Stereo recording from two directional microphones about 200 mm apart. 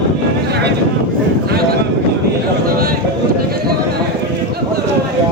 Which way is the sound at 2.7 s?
50° right (ahead or behind).